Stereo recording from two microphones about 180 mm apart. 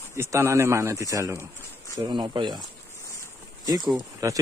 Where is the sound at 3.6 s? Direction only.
20° right (ahead or behind).